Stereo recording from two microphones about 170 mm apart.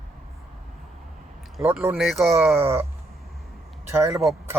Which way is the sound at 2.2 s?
15° right (ahead or behind).